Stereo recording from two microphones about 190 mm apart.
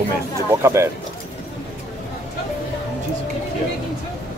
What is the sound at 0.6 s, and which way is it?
Speech, 15° right (ahead or behind).